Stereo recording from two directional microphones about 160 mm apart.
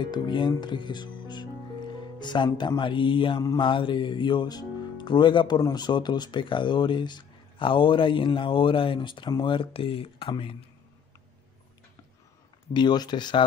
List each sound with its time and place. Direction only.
0.0 s speech: 30° left (ahead or behind)
12.7 s speech: 25° left (ahead or behind)